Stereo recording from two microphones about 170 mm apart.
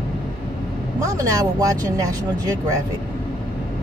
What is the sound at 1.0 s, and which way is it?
Speech, 20° right (ahead or behind).